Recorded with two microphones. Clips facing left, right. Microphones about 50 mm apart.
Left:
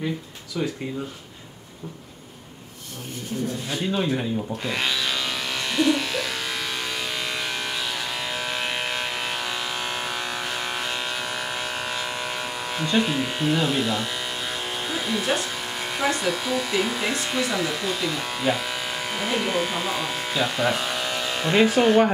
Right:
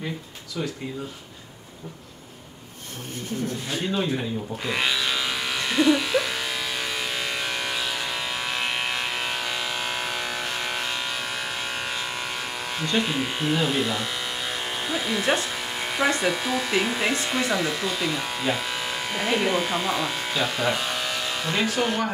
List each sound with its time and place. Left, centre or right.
3.9 s speech: centre
4.7 s electric shaver: centre
16.2 s speech: centre
21.4 s speech: left